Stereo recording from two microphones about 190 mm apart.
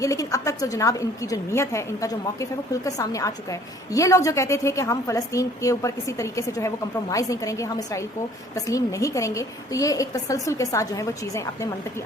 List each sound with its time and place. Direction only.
0.0 s a woman's voice: 15° left (ahead or behind)